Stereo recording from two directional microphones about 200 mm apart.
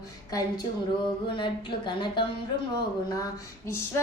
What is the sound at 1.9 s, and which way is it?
Speech, 25° left (ahead or behind).